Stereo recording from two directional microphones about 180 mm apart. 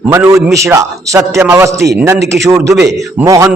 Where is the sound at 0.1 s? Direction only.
15° right (ahead or behind).